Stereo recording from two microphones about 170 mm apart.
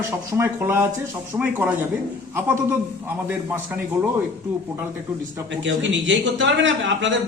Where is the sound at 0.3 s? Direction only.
15° right (ahead or behind).